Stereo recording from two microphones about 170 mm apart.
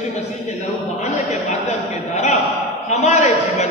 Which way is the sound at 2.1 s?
45° left (ahead or behind).